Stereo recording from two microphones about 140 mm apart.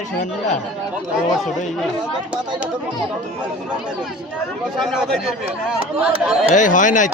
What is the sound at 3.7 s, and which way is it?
Speech, 5° right (ahead or behind).